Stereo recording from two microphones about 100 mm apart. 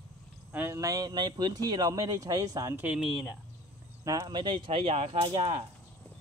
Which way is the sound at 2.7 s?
15° right (ahead or behind).